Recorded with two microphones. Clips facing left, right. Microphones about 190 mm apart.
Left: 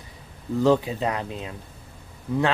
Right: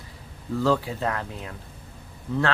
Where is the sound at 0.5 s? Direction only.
20° left (ahead or behind).